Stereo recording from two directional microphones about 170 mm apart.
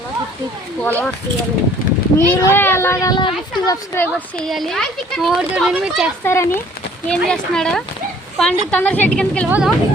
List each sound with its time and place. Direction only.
0.8 s speech: 10° left (ahead or behind)
2.1 s speech: 15° left (ahead or behind)
3.9 s speech: 5° left (ahead or behind)
6.2 s speech: 15° left (ahead or behind)
7.1 s speech: 5° left (ahead or behind)
9.5 s speech: 5° right (ahead or behind)